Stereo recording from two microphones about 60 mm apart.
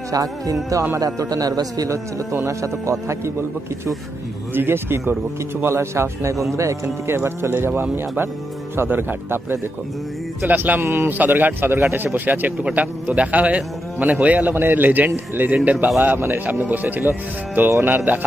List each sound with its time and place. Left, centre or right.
0.1 s speech: right
0.9 s a man's voice: right
2.4 s speech: right
4.6 s speech: right
7.2 s speech: right
10.8 s speech: right
11.1 s speech: right